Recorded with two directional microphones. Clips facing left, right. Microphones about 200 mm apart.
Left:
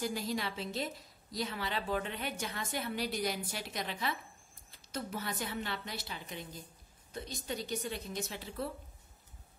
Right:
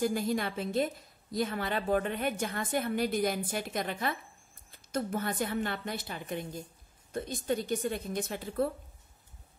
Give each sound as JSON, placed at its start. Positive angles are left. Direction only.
{"t": 0.0, "sound": "a woman's voice", "side_deg": -50}